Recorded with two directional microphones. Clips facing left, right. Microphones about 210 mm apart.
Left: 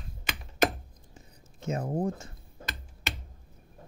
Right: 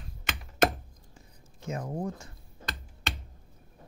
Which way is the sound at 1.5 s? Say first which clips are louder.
Left 4 dB; 25° left (ahead or behind).